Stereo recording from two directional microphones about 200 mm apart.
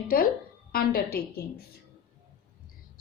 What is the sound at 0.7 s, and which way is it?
Speech, 50° left (ahead or behind).